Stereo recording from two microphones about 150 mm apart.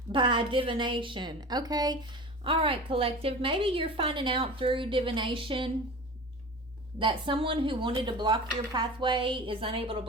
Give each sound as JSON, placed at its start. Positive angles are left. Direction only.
{"t": 0.1, "sound": "a woman's voice", "side_deg": -35}
{"t": 7.0, "sound": "a woman's voice", "side_deg": -35}